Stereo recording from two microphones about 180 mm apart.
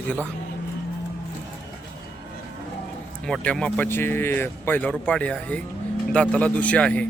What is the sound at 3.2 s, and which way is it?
Speech, 5° left (ahead or behind).